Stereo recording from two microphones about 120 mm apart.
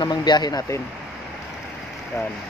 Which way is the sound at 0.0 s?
35° left (ahead or behind).